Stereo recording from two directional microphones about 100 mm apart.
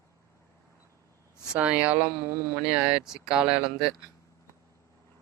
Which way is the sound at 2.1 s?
30° right (ahead or behind).